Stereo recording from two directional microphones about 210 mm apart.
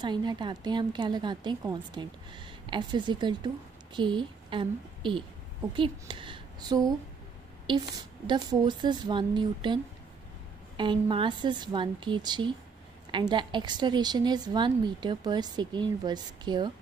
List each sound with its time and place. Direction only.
0.0 s a woman's voice: 20° right (ahead or behind)
8.3 s a woman's voice: 20° right (ahead or behind)
10.8 s a woman's voice: 25° right (ahead or behind)